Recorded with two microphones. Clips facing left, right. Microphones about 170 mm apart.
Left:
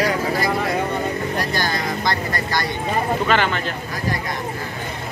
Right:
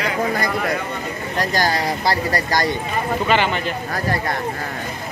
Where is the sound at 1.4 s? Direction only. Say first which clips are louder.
Right 3 dB; 40° right (ahead or behind).